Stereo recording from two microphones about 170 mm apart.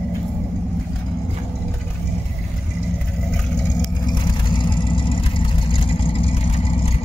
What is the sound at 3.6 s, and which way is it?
Vehicle, 25° left (ahead or behind).